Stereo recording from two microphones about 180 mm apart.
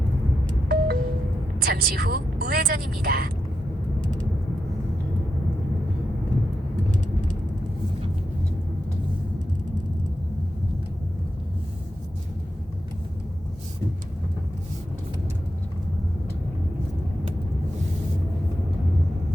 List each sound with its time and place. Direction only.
0.7 s music: 55° right (ahead or behind)
1.6 s speech: 55° right (ahead or behind)